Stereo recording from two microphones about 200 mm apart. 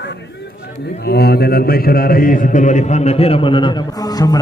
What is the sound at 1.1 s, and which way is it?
A man's voice, 50° left (ahead or behind).